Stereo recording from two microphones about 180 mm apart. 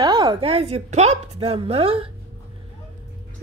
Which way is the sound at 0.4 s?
35° right (ahead or behind).